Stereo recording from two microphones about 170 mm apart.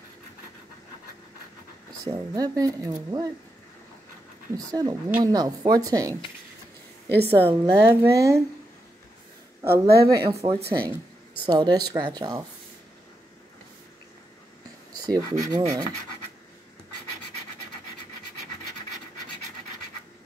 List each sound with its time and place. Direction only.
2.0 s speech: 20° right (ahead or behind)
4.7 s speech: 20° right (ahead or behind)
7.2 s a woman's voice: 35° right (ahead or behind)
7.6 s a woman's voice: 15° right (ahead or behind)
9.7 s speech: 65° right (ahead or behind)
10.3 s a woman's voice: 35° right (ahead or behind)
15.0 s speech: 25° right (ahead or behind)